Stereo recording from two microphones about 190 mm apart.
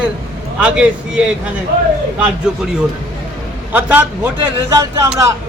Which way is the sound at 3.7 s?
10° right (ahead or behind).